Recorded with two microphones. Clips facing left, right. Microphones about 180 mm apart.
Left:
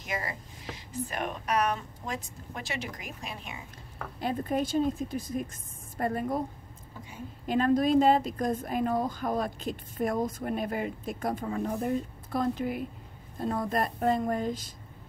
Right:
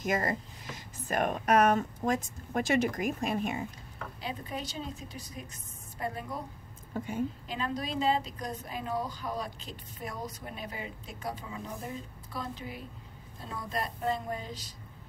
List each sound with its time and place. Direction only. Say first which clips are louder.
0.0 s speech: right 6 dB; 45° right (ahead or behind)
4.2 s a woman's voice: left 9 dB; 50° left (ahead or behind)
6.9 s a woman's voice: right 11 dB; 55° right (ahead or behind)
7.4 s a woman's voice: left 11 dB; 50° left (ahead or behind)